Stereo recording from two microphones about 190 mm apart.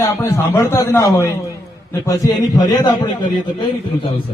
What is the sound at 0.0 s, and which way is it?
A man's voice, 15° left (ahead or behind).